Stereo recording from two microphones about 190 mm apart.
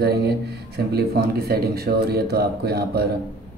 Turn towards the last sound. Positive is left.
turn(degrees=-55)  # may be behind; listen again after turning